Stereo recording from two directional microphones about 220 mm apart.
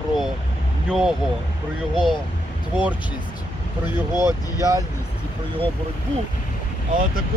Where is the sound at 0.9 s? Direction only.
5° right (ahead or behind).